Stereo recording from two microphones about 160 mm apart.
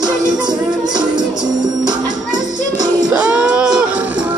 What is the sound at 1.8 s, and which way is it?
Music, 25° right (ahead or behind).